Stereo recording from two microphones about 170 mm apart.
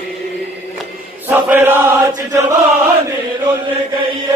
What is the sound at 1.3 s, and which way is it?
Chant, 10° right (ahead or behind).